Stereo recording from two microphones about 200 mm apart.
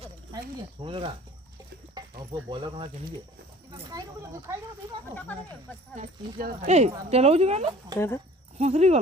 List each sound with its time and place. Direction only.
0.9 s speech: 25° right (ahead or behind)
2.3 s speech: 20° right (ahead or behind)
6.0 s speech: 35° right (ahead or behind)
7.9 s speech: 15° left (ahead or behind)
8.5 s speech: 30° right (ahead or behind)